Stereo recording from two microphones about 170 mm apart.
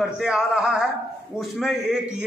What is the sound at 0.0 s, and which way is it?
A man's voice, 5° right (ahead or behind).